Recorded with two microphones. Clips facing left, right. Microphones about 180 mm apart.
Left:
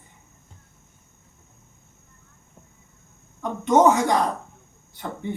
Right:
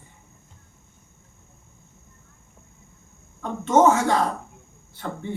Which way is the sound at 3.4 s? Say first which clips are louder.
Even; 15° left (ahead or behind).